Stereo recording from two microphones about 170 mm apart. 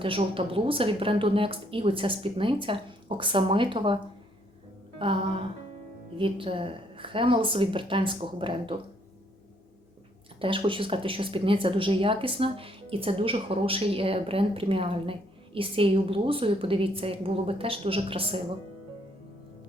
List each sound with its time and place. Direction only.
0.0 s speech: 30° right (ahead or behind)
4.9 s speech: 30° right (ahead or behind)
10.4 s speech: 30° right (ahead or behind)